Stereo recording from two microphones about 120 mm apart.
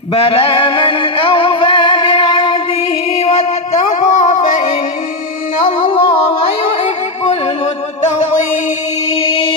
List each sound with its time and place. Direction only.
0.1 s music: 50° left (ahead or behind); by 4.3 s 70° left (ahead or behind)
5.6 s music: 50° left (ahead or behind)
9.1 s singing: 50° left (ahead or behind)